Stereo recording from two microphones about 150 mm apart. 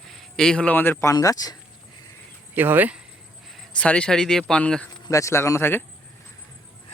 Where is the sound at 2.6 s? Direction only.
10° right (ahead or behind).